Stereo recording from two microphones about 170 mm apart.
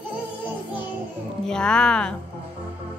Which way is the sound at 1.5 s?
5° left (ahead or behind).